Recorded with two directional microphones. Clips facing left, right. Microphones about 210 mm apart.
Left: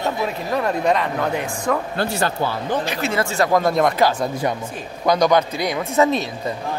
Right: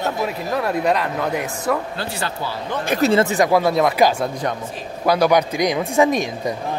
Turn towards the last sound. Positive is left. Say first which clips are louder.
# right 1 dB
turn(degrees=-15)  # may be behind; listen again after turning